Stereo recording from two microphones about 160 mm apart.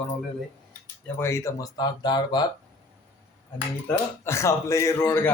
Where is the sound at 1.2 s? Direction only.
15° left (ahead or behind).